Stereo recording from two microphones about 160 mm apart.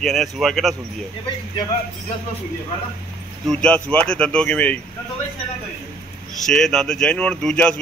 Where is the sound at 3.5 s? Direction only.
5° left (ahead or behind).